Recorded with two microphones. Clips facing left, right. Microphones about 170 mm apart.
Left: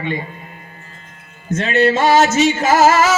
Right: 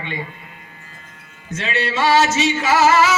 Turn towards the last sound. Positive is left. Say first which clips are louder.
# left 3 dB
turn(degrees=45)  # may be behind; listen again after turning